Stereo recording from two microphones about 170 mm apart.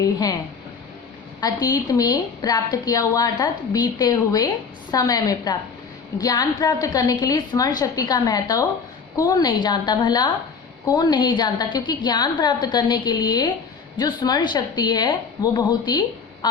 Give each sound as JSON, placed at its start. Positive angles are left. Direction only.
{"t": 0.0, "sound": "a woman's voice", "side_deg": 20}
{"t": 1.4, "sound": "a woman's voice", "side_deg": 20}